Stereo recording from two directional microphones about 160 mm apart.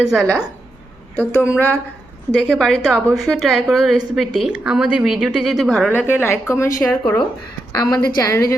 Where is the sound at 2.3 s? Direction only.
Centre (ahead or behind); by 6.7 s 15° left (ahead or behind).